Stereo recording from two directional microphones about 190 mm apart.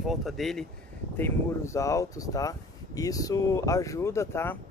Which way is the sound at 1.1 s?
10° left (ahead or behind).